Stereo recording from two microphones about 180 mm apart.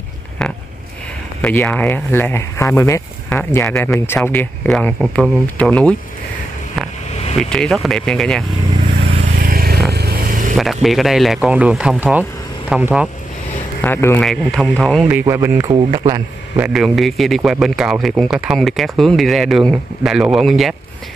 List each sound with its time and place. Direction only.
0.4 s a sound: 5° left (ahead or behind)
1.4 s speech: 10° left (ahead or behind)
7.4 s speech: 5° left (ahead or behind)
8.8 s vehicle: 35° right (ahead or behind)
9.4 s vehicle: 60° right (ahead or behind)
10.5 s speech: centre (ahead or behind)
13.7 s speech: 15° left (ahead or behind)
14.2 s speech: centre (ahead or behind)
15.0 s speech: 10° right (ahead or behind); by 16.2 s 25° right (ahead or behind)
16.5 s speech: 5° right (ahead or behind)